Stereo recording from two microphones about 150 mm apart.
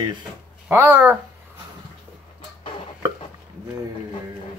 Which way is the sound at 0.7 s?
15° right (ahead or behind).